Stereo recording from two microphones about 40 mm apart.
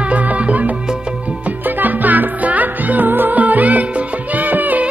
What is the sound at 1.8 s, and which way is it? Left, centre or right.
Music, right.